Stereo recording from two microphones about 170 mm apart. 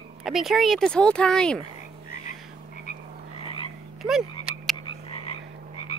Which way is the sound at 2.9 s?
50° left (ahead or behind).